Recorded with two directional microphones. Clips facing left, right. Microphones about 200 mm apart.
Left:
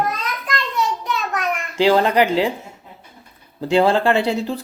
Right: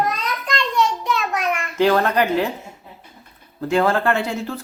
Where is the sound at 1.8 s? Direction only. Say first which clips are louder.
Left 2 dB; 15° left (ahead or behind).